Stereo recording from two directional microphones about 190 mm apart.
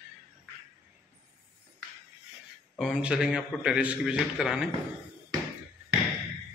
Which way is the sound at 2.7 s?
Centre (ahead or behind).